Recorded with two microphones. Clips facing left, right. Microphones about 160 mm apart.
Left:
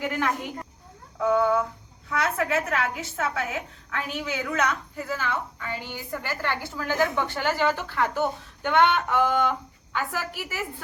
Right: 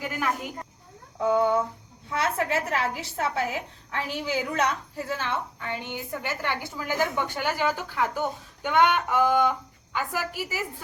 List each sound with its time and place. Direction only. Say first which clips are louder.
0.0 s a woman's voice: left 2 dB; 5° right (ahead or behind)
1.2 s a woman's voice: even; 25° right (ahead or behind)